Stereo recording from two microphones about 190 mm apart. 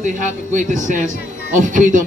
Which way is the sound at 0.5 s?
40° right (ahead or behind).